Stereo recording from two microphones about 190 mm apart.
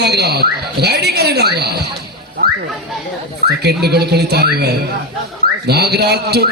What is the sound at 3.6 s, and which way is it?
A man's voice, 60° right (ahead or behind).